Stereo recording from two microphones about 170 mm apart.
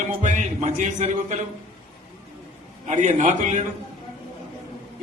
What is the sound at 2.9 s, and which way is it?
Speech, 45° right (ahead or behind).